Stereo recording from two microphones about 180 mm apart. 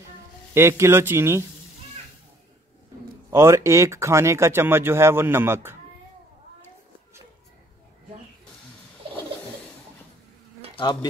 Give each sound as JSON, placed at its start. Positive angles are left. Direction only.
{"t": 0.6, "sound": "speech", "side_deg": -15}
{"t": 3.3, "sound": "speech", "side_deg": -15}
{"t": 10.8, "sound": "speech", "side_deg": 25}